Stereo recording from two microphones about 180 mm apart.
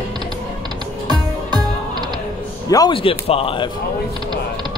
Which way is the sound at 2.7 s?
20° left (ahead or behind).